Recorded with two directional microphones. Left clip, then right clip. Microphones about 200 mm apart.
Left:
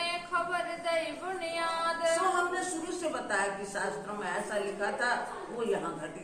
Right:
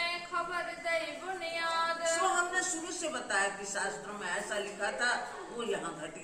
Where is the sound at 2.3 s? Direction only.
15° right (ahead or behind).